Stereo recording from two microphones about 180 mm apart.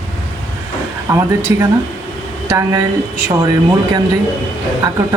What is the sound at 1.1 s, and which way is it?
Speech, 15° right (ahead or behind).